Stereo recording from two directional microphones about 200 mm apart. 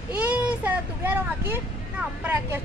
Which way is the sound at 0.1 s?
5° right (ahead or behind).